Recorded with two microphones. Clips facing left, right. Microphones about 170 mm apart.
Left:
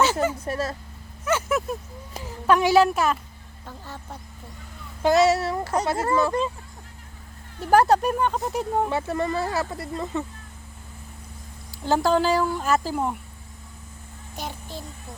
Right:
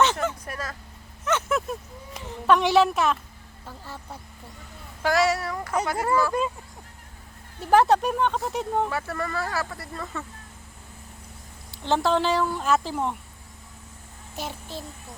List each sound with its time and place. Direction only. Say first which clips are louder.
0.0 s speech: left 1 dB; 5° left (ahead or behind)
0.4 s speech: left 7 dB; 30° left (ahead or behind)
1.2 s a sound: left 1 dB; 5° left (ahead or behind)
2.1 s speech: left 1 dB; centre (ahead or behind)
5.0 s speech: left 4 dB; 25° left (ahead or behind)
7.7 s speech: left 1 dB; centre (ahead or behind)
8.9 s speech: left 5 dB; 20° left (ahead or behind)
11.8 s speech: left 2 dB; 5° left (ahead or behind)
14.3 s speech: even; centre (ahead or behind)